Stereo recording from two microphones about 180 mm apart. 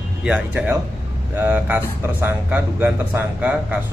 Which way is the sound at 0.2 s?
5° right (ahead or behind).